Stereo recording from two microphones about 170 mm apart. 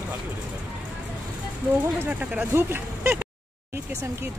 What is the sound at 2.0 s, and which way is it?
Speech, 10° right (ahead or behind).